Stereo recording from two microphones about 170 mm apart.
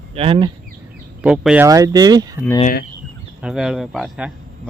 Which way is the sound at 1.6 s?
20° right (ahead or behind).